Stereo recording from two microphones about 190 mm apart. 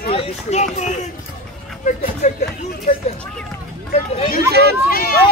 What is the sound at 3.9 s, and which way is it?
Speech, 30° left (ahead or behind).